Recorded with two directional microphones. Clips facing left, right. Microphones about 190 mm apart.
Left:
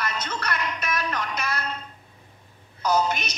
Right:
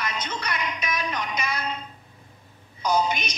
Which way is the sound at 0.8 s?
5° left (ahead or behind).